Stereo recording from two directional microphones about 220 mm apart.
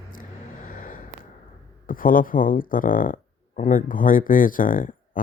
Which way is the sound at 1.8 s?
40° left (ahead or behind).